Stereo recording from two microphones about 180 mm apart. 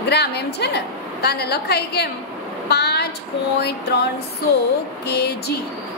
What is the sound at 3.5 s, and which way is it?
A woman's voice, 65° left (ahead or behind).